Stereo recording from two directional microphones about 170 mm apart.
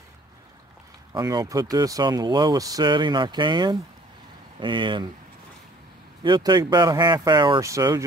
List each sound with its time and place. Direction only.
1.1 s speech: 20° right (ahead or behind)
6.2 s speech: 25° right (ahead or behind)